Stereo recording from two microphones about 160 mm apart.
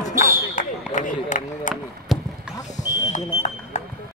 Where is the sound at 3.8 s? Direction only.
45° left (ahead or behind).